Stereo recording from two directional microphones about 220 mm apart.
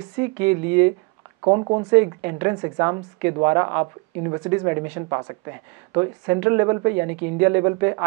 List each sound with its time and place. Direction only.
0.4 s a woman's voice: 10° right (ahead or behind)
1.4 s speech: 25° right (ahead or behind)
2.0 s a woman's voice: 15° right (ahead or behind)